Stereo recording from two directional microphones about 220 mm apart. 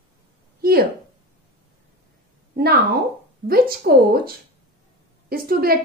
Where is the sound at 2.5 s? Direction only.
45° right (ahead or behind).